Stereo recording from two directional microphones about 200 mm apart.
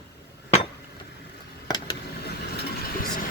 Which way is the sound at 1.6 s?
20° left (ahead or behind).